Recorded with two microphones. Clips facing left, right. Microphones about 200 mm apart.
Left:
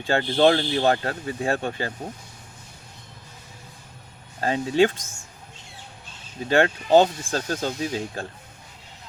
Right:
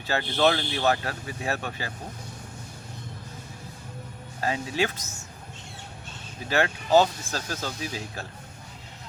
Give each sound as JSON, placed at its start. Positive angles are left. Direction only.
{"t": 0.1, "sound": "speech", "side_deg": 30}
{"t": 4.4, "sound": "speech", "side_deg": 30}
{"t": 6.5, "sound": "speech", "side_deg": 25}